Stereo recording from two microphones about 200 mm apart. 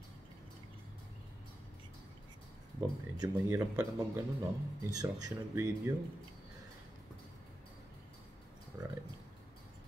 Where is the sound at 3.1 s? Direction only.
20° right (ahead or behind).